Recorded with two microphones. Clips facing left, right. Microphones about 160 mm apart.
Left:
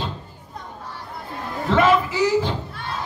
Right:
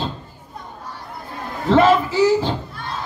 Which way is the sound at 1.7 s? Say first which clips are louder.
Right 3 dB; 30° right (ahead or behind).